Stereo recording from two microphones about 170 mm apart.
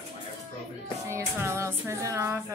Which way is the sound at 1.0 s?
15° right (ahead or behind).